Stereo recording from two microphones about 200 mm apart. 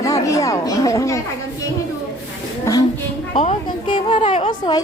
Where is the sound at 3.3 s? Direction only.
25° left (ahead or behind).